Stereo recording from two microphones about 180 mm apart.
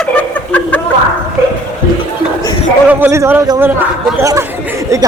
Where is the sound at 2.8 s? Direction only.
15° right (ahead or behind).